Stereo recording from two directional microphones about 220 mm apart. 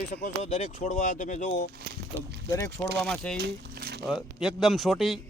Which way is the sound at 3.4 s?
45° right (ahead or behind).